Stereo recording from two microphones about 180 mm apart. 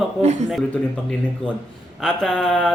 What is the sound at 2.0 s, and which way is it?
Speech, 5° left (ahead or behind).